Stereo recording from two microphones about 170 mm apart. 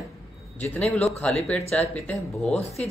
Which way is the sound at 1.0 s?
5° left (ahead or behind).